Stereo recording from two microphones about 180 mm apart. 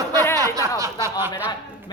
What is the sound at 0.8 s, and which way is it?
Speech, 15° right (ahead or behind).